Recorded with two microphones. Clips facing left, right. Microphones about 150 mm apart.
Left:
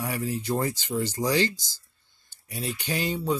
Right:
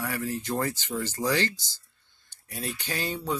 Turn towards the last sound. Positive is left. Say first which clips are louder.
# left 4 dB
turn(degrees=15)  # may be behind; listen again after turning